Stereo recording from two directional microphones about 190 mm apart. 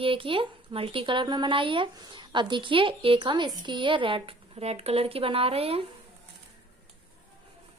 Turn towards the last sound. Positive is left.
turn(degrees=-30)  # may be behind; listen again after turning